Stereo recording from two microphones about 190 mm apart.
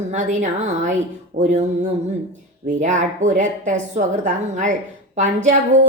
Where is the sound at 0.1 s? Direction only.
40° right (ahead or behind).